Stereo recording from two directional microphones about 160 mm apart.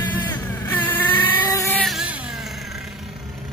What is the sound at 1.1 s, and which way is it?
Vehicle, 25° left (ahead or behind).